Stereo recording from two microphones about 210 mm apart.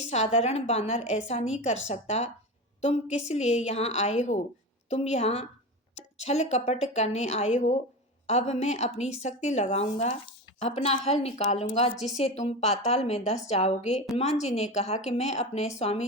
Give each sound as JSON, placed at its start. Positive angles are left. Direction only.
{"t": 0.0, "sound": "a woman's voice", "side_deg": 30}